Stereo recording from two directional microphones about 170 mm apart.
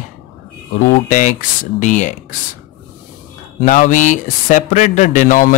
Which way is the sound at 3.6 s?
45° left (ahead or behind).